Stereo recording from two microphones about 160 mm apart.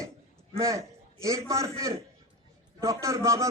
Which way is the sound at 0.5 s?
20° right (ahead or behind).